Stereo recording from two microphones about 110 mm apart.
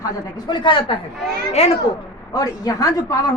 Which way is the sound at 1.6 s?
75° left (ahead or behind).